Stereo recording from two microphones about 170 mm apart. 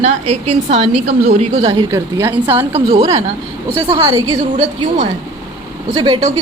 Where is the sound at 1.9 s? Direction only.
15° right (ahead or behind).